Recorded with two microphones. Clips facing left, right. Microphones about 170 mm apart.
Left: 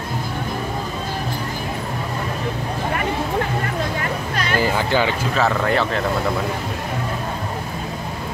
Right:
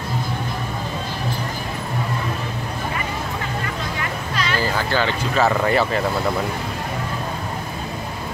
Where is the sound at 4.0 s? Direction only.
50° left (ahead or behind).